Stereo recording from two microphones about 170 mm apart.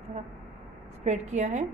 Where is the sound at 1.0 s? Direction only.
45° right (ahead or behind).